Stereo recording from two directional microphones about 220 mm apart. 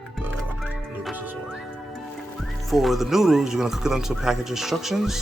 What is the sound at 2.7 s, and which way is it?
Speech, centre (ahead or behind).